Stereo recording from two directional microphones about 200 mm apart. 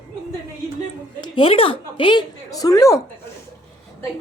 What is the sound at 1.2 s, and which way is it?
A woman's voice, 25° left (ahead or behind).